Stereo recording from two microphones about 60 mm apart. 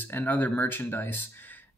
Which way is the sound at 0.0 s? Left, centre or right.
Left.